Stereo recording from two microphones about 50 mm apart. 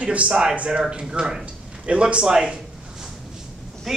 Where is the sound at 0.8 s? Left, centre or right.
Centre.